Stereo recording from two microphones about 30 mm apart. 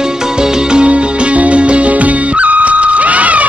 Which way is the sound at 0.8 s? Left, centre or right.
Right.